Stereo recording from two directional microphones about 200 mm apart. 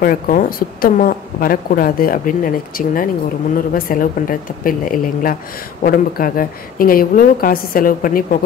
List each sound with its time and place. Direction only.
0.0 s a woman's voice: 45° left (ahead or behind)